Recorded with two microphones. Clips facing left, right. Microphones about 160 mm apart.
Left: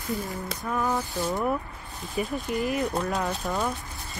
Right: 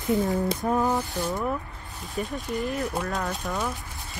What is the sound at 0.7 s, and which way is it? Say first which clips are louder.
Speech: right 2 dB; 20° right (ahead or behind).